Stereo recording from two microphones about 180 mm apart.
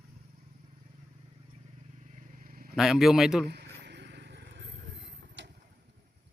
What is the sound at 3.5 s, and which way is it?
Vehicle, 65° right (ahead or behind).